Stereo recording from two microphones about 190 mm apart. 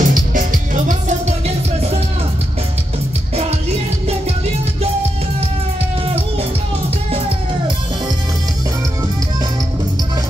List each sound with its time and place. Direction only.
0.0 s music: 45° right (ahead or behind)